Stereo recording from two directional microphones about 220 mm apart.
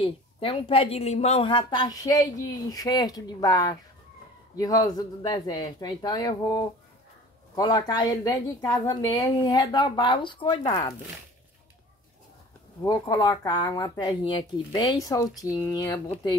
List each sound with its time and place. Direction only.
0.0 s a woman's voice: 25° left (ahead or behind)
12.8 s a woman's voice: 15° left (ahead or behind)